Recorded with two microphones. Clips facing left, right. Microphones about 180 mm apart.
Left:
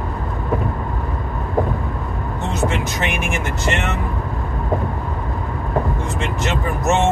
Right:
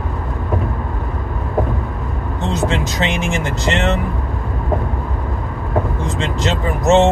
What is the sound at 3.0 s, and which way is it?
Speech, 20° right (ahead or behind).